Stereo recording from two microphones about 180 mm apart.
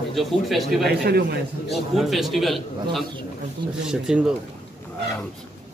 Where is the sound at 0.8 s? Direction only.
60° right (ahead or behind).